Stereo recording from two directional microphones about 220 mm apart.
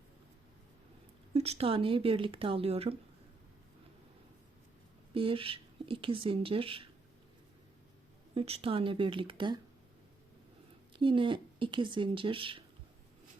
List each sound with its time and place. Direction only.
1.3 s speech: 30° right (ahead or behind)
5.1 s speech: 25° right (ahead or behind)
8.4 s speech: 25° right (ahead or behind)
10.9 s speech: 25° right (ahead or behind)